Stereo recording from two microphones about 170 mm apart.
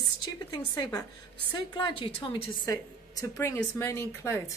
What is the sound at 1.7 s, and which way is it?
Speech, 30° left (ahead or behind).